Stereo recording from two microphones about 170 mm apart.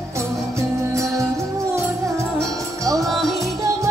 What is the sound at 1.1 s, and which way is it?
Music, 20° right (ahead or behind).